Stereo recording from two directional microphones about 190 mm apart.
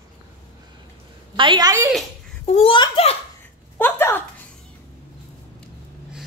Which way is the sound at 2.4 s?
30° left (ahead or behind).